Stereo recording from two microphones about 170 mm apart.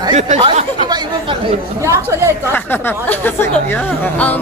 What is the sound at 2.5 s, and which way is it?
A woman's voice, 10° left (ahead or behind).